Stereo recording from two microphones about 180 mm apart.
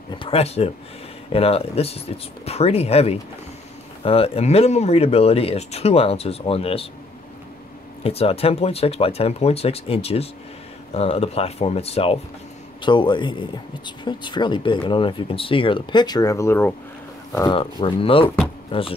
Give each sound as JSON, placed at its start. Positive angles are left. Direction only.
{"t": 0.1, "sound": "speech", "side_deg": 30}
{"t": 8.0, "sound": "speech", "side_deg": 35}
{"t": 17.5, "sound": "speech", "side_deg": 25}